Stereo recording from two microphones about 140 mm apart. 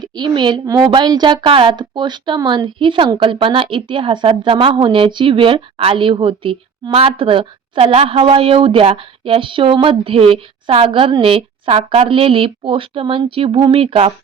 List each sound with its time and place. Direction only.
0.2 s speech: 30° right (ahead or behind)